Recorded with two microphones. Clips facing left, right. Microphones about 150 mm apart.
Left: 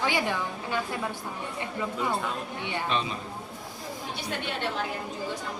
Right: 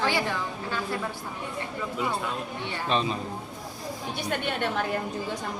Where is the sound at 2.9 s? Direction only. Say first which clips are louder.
Right 5 dB; 35° right (ahead or behind).